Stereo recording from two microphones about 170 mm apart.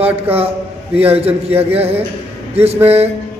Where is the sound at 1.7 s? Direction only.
35° right (ahead or behind).